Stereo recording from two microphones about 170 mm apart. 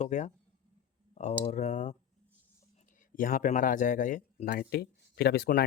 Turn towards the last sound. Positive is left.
turn(degrees=65)  # may be behind; listen again after turning